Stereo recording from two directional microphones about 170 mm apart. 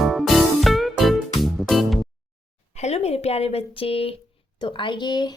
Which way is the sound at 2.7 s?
40° left (ahead or behind).